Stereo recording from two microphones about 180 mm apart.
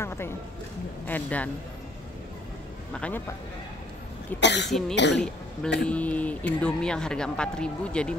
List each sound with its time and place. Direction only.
0.0 s a sound: 15° left (ahead or behind)
1.0 s speech: 10° left (ahead or behind)
2.9 s speech: 10° left (ahead or behind)
4.4 s speech: 75° left (ahead or behind)
4.6 s speech: centre (ahead or behind)